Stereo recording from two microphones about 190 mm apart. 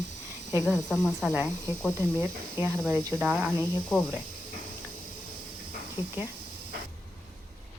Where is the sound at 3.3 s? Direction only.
5° left (ahead or behind).